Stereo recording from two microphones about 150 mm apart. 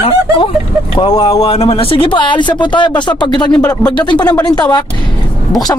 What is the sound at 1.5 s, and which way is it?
Speech, 40° left (ahead or behind).